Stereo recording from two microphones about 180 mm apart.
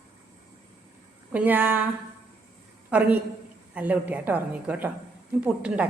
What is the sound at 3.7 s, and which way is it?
A woman's voice, 10° right (ahead or behind).